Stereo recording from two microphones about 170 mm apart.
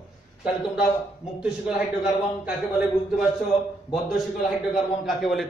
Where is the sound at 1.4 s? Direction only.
5° right (ahead or behind).